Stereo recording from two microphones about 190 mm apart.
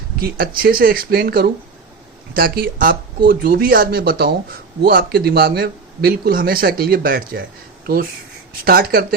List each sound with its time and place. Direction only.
0.2 s speech: 50° right (ahead or behind)
8.6 s speech: 50° right (ahead or behind)